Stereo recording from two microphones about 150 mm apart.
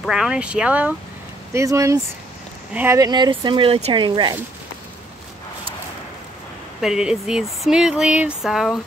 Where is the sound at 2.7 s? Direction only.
10° right (ahead or behind).